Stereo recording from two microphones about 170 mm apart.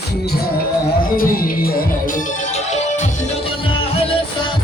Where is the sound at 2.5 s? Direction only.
40° left (ahead or behind).